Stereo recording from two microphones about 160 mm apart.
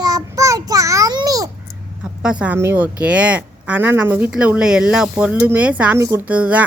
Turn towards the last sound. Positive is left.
turn(degrees=-10)  # may be behind; listen again after turning